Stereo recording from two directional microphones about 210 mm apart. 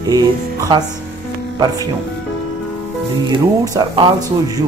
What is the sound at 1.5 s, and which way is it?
Speech, 20° right (ahead or behind).